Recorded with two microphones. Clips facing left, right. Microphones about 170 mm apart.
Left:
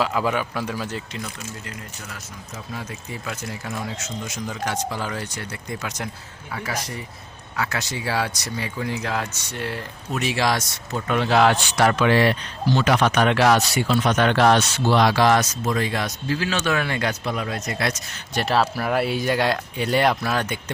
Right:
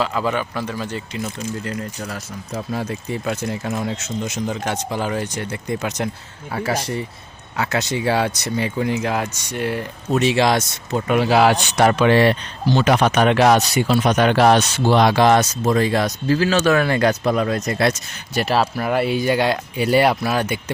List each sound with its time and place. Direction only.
0.0 s speech: 5° left (ahead or behind)
1.6 s speech: 35° right (ahead or behind)
3.9 s speech: 25° right (ahead or behind)
10.1 s speech: 25° right (ahead or behind)
11.2 s speech: 10° right (ahead or behind); by 17.9 s 40° right (ahead or behind)
18.3 s speech: 5° right (ahead or behind)